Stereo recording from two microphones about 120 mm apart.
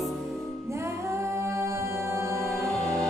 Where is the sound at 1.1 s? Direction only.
25° right (ahead or behind).